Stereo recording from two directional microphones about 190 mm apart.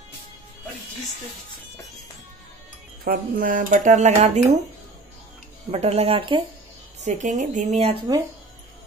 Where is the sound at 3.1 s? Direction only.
45° right (ahead or behind).